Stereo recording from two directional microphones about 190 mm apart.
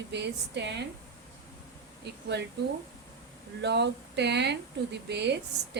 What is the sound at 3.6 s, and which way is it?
Speech, 60° right (ahead or behind).